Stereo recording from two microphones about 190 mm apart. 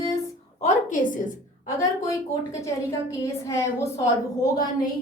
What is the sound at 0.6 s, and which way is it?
Speech, 40° left (ahead or behind).